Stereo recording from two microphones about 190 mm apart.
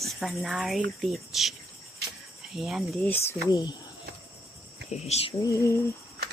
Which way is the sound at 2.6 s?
Centre (ahead or behind).